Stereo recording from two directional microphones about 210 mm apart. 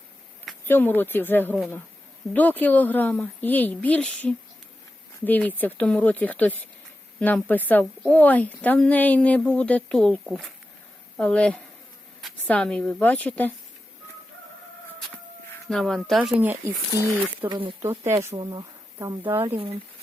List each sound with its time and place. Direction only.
0.4 s a woman's voice: 10° left (ahead or behind)
15.7 s a woman's voice: centre (ahead or behind)
17.5 s speech: 25° right (ahead or behind)
17.8 s speech: 10° right (ahead or behind)
19.5 s speech: 25° right (ahead or behind)